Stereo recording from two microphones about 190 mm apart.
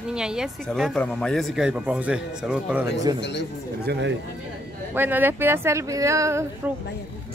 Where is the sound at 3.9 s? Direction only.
70° right (ahead or behind).